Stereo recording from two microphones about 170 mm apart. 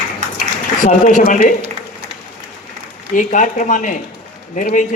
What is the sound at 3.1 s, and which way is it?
Speech, 50° left (ahead or behind).